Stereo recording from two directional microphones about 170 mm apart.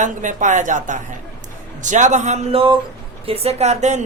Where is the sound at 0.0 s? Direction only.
45° right (ahead or behind).